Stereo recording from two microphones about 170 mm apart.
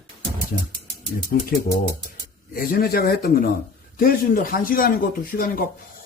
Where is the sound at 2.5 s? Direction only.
60° left (ahead or behind).